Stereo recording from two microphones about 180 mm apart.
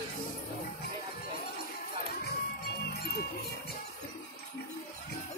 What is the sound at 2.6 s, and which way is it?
Music, 65° left (ahead or behind).